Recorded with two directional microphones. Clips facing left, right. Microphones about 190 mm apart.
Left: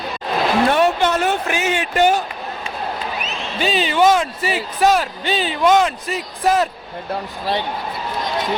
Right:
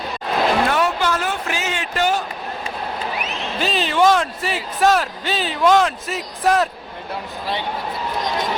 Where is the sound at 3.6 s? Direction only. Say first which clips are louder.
Left 2 dB; centre (ahead or behind).